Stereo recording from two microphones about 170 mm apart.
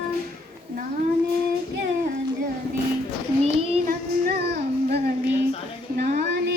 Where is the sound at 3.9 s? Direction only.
65° right (ahead or behind).